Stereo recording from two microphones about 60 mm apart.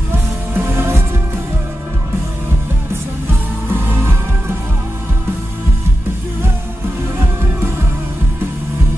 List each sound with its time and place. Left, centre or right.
0.1 s music: right
3.6 s music: right